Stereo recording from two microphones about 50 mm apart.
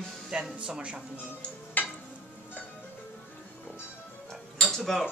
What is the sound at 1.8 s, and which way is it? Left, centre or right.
Stir, left.